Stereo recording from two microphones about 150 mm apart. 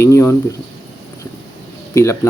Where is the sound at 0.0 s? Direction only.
20° left (ahead or behind).